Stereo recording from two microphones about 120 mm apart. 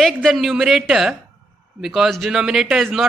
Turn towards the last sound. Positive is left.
turn(degrees=-5)  # may be behind; listen again after turning